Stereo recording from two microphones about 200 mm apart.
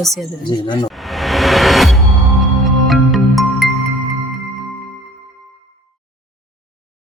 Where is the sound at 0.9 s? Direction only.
Centre (ahead or behind).